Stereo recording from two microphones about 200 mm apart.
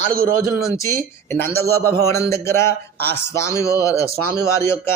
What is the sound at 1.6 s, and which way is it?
Speech, 50° right (ahead or behind).